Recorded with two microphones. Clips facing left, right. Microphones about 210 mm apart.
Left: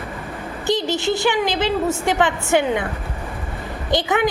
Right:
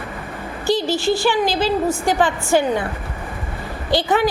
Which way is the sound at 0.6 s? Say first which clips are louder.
Right 2 dB; 20° left (ahead or behind).